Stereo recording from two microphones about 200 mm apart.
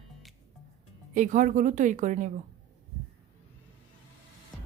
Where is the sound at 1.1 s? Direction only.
40° right (ahead or behind).